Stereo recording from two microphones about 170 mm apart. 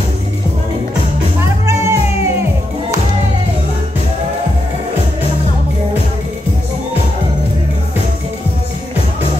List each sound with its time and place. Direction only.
1.4 s music: 15° right (ahead or behind)